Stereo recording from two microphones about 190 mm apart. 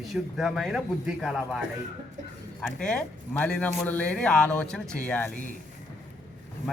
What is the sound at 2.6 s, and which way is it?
A man's voice, 5° left (ahead or behind).